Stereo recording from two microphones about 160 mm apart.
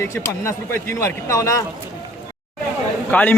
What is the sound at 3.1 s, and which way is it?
Speech, 10° left (ahead or behind).